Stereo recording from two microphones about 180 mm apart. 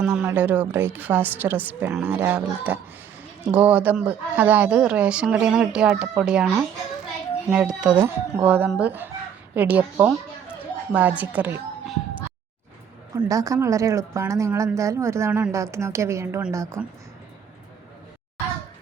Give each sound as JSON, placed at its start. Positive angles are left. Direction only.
{"t": 0.0, "sound": "a woman's voice", "side_deg": -10}